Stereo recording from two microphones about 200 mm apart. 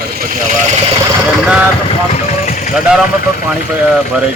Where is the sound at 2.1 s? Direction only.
40° left (ahead or behind).